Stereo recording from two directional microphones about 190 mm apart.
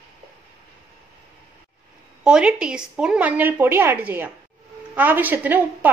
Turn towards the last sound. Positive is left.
turn(degrees=-10)  # may be behind; listen again after turning